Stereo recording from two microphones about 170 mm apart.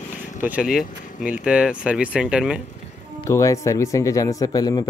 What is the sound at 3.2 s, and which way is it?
Speech, 20° left (ahead or behind).